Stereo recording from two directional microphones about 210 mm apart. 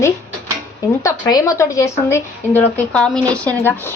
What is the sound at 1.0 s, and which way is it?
Speech, 15° left (ahead or behind).